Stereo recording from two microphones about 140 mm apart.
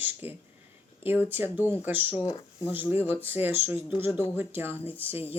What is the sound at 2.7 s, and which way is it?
Speech, 15° right (ahead or behind).